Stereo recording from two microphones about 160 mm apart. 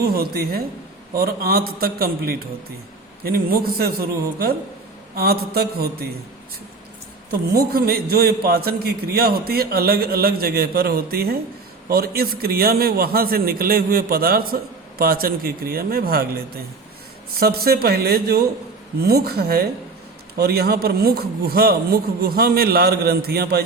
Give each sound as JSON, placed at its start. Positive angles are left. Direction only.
{"t": 0.0, "sound": "a man's voice", "side_deg": -75}
{"t": 5.1, "sound": "a man's voice", "side_deg": -70}
{"t": 7.3, "sound": "a man's voice", "side_deg": -75}
{"t": 17.4, "sound": "a man's voice", "side_deg": -75}